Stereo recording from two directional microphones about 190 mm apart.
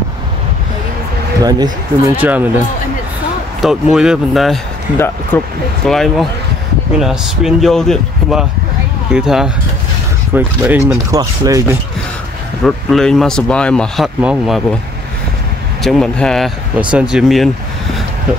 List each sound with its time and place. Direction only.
1.4 s speech: 20° right (ahead or behind)
2.1 s speech: 10° right (ahead or behind)
3.6 s speech: 5° right (ahead or behind)
4.9 s speech: 10° left (ahead or behind)
5.9 s speech: centre (ahead or behind); by 11.6 s 20° right (ahead or behind)
12.6 s speech: centre (ahead or behind)
15.8 s speech: centre (ahead or behind)